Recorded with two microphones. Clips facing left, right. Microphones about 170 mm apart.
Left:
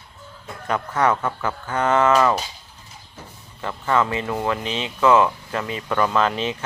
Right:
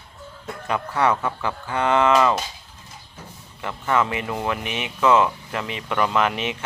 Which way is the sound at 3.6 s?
15° right (ahead or behind).